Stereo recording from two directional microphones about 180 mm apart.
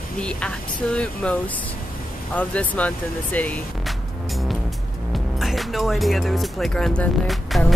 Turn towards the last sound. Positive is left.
turn(degrees=0)  # may be behind; listen again after turning